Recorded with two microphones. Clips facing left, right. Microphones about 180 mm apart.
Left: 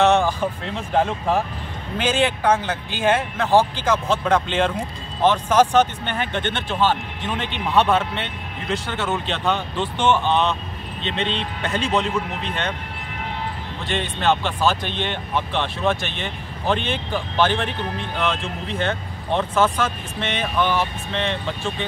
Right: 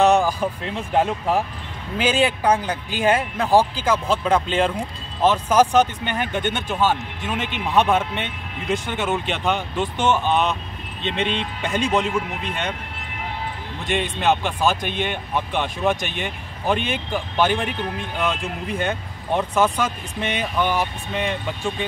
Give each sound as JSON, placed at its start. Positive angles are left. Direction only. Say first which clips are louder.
{"t": 0.0, "sound": "speech", "louder": "even", "side_deg": -10}
{"t": 2.0, "sound": "speech", "louder": "right 1 dB", "side_deg": -10}
{"t": 13.8, "sound": "speech", "louder": "right 1 dB", "side_deg": -15}
{"t": 18.8, "sound": "speech", "louder": "left 3 dB", "side_deg": -10}